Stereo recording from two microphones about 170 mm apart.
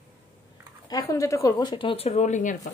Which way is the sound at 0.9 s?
20° left (ahead or behind).